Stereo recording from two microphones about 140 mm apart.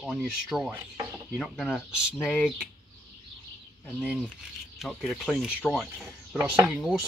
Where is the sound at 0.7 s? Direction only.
25° right (ahead or behind).